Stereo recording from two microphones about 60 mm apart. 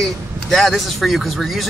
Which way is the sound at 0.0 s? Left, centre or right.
Centre.